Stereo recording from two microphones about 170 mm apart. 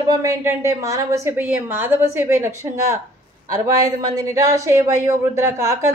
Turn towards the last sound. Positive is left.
turn(degrees=-15)  # may be behind; listen again after turning